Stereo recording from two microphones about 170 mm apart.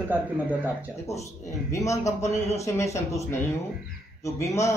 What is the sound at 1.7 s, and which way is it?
A man's voice, 20° left (ahead or behind).